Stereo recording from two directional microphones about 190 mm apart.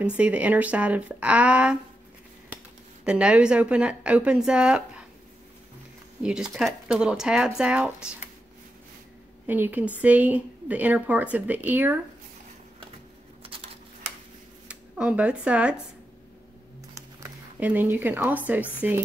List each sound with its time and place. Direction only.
0.2 s a woman's voice: 5° right (ahead or behind)
3.1 s speech: 5° right (ahead or behind)
6.2 s speech: 5° right (ahead or behind)
9.5 s a woman's voice: 10° right (ahead or behind)
13.4 s a sound: 30° right (ahead or behind)
14.7 s speech: 5° right (ahead or behind)
17.2 s speech: 10° right (ahead or behind)